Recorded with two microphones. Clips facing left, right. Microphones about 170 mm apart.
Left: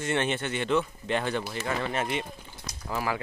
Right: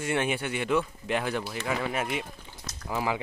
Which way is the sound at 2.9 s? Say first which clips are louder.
Right 1 dB; 20° right (ahead or behind).